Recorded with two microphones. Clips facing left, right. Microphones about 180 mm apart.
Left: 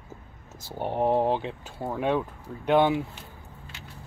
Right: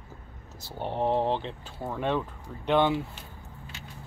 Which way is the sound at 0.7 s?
10° left (ahead or behind).